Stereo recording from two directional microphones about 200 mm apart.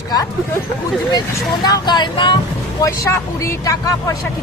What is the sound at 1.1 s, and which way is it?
Speech, 20° left (ahead or behind).